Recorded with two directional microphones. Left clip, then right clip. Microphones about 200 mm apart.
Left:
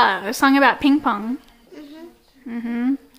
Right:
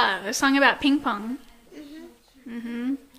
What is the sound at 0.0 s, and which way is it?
A woman's voice, 15° left (ahead or behind).